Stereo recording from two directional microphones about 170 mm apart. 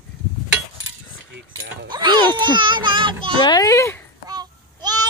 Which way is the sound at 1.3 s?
80° right.